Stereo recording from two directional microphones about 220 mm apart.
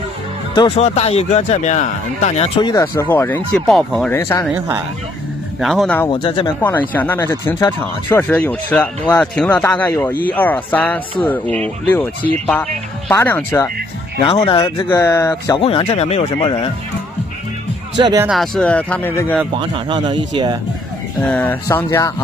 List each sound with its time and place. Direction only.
0.6 s speech: 25° left (ahead or behind)
4.6 s speech: 10° right (ahead or behind)
5.6 s speech: centre (ahead or behind)
6.0 s speech: 20° left (ahead or behind)
6.6 s speech: 10° left (ahead or behind)
14.5 s speech: 25° left (ahead or behind)
14.9 s speech: 10° left (ahead or behind)
15.6 s speech: 25° left (ahead or behind)
17.9 s speech: 20° right (ahead or behind)
18.2 s speech: centre (ahead or behind)
19.5 s speech: 20° right (ahead or behind)
21.2 s speech: 5° left (ahead or behind)